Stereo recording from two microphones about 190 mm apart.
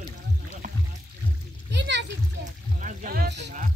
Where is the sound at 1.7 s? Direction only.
65° right (ahead or behind).